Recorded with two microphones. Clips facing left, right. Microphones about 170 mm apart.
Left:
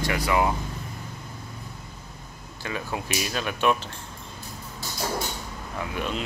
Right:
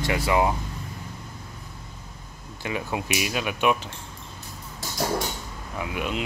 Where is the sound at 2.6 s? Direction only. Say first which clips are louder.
Right 2 dB; 15° right (ahead or behind).